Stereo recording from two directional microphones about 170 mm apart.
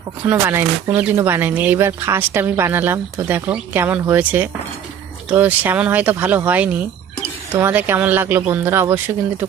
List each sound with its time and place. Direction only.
0.3 s speech: 10° right (ahead or behind)